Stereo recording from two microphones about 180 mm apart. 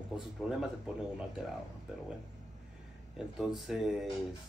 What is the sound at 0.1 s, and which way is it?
Speech, 5° right (ahead or behind).